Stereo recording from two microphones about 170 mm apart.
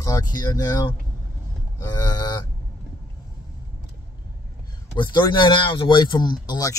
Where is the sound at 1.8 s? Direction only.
20° left (ahead or behind).